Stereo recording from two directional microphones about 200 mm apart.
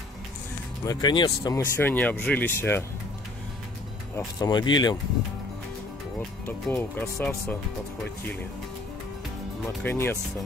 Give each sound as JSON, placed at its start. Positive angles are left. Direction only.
{"t": 0.8, "sound": "speech", "side_deg": 20}
{"t": 4.4, "sound": "speech", "side_deg": 20}
{"t": 6.4, "sound": "speech", "side_deg": 10}
{"t": 9.8, "sound": "speech", "side_deg": 10}